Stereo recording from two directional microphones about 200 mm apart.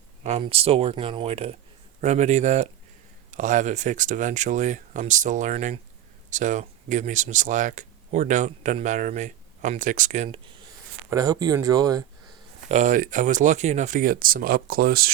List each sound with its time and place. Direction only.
0.2 s speech: 30° right (ahead or behind)
11.1 s speech: 15° right (ahead or behind)
12.6 s speech: 35° right (ahead or behind)